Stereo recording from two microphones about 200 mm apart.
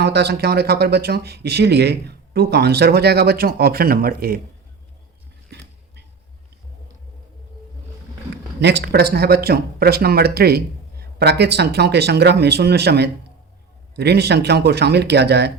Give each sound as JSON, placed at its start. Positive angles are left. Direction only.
{"t": 0.0, "sound": "speech", "side_deg": -55}
{"t": 8.6, "sound": "speech", "side_deg": -55}